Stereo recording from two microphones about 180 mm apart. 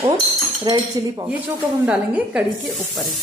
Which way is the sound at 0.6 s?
20° right (ahead or behind).